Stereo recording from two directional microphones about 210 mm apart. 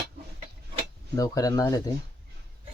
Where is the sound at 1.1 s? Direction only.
15° left (ahead or behind).